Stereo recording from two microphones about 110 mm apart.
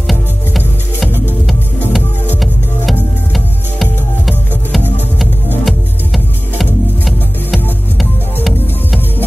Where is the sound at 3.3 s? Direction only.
Centre (ahead or behind).